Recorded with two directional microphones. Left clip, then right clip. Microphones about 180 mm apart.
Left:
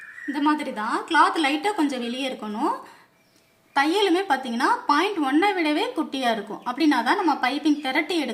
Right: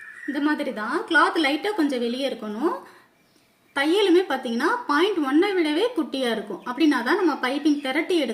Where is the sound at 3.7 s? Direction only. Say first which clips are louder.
Right 1 dB; 35° left (ahead or behind).